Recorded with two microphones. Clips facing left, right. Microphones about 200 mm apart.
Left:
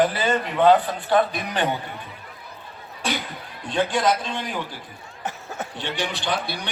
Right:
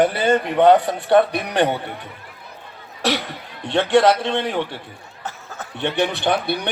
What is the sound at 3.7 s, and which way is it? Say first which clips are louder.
A man's voice: right 6 dB; 65° right (ahead or behind).